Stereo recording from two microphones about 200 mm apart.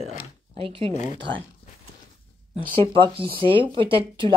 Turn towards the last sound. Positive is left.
turn(degrees=-25)  # may be behind; listen again after turning